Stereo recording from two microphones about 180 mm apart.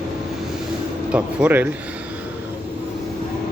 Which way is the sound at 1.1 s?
10° right (ahead or behind).